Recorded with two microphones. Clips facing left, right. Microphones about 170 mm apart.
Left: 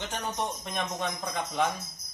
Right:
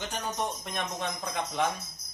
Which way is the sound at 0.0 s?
Centre (ahead or behind).